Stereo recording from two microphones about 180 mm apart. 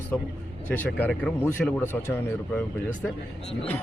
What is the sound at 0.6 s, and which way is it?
Speech, 10° left (ahead or behind).